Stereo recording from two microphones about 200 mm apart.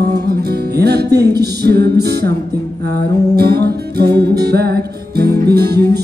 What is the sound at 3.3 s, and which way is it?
Music, 55° right (ahead or behind).